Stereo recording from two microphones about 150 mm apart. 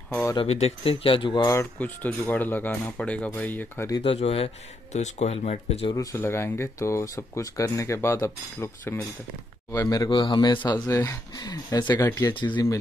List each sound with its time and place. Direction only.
0.1 s speech: 20° left (ahead or behind)
0.4 s speech: 45° left (ahead or behind); by 1.7 s 25° left (ahead or behind)
1.8 s speech: 10° left (ahead or behind)
4.0 s speech: 40° left (ahead or behind)
5.9 s speech: 20° left (ahead or behind)
12.4 s speech: 30° left (ahead or behind)